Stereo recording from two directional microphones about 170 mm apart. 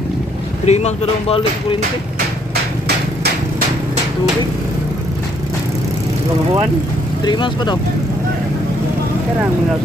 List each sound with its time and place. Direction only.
0.7 s speech: 40° left (ahead or behind)
7.2 s speech: 25° left (ahead or behind)